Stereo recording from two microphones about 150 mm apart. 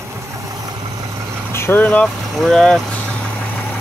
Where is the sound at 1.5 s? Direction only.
15° left (ahead or behind).